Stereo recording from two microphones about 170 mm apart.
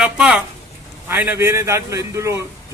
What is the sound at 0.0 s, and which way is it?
A woman's voice, 5° right (ahead or behind).